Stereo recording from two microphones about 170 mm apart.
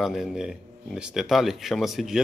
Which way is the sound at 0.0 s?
Centre (ahead or behind).